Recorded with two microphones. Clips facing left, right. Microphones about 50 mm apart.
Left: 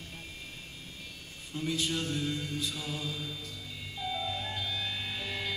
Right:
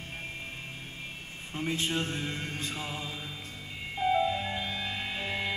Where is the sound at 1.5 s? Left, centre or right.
Right.